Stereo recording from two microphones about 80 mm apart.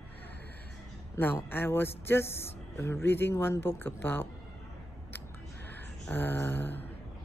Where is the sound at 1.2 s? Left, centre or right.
Left.